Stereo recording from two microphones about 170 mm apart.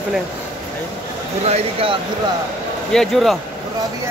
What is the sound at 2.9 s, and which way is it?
Speech, centre (ahead or behind).